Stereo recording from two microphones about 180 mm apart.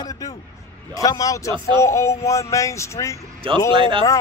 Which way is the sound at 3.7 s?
30° right (ahead or behind).